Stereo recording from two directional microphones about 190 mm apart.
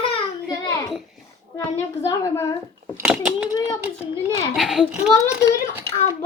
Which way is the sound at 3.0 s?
5° right (ahead or behind).